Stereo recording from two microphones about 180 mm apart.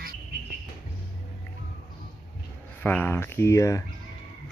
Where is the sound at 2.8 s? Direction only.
10° left (ahead or behind).